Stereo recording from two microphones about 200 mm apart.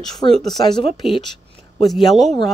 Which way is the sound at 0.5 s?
20° left (ahead or behind).